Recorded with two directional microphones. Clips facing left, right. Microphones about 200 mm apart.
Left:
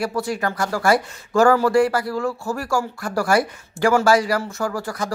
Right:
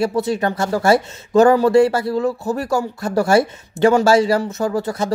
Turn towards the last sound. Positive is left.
turn(degrees=-25)  # may be behind; listen again after turning